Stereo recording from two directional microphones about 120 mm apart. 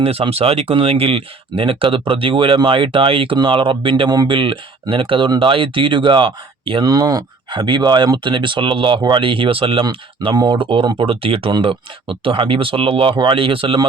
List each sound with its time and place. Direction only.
0.0 s speech: 55° right (ahead or behind)
6.8 s speech: 30° right (ahead or behind); by 9.8 s 50° right (ahead or behind)
10.3 s speech: 35° right (ahead or behind)
10.6 s speech: 45° right (ahead or behind)